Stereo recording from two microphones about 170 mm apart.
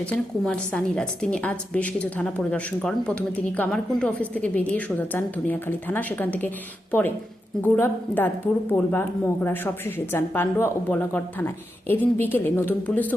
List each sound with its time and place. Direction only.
0.0 s a woman's voice: 5° left (ahead or behind)
7.6 s a woman's voice: 10° left (ahead or behind)